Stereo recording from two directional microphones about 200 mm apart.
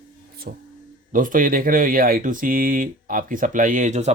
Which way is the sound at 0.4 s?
50° right (ahead or behind).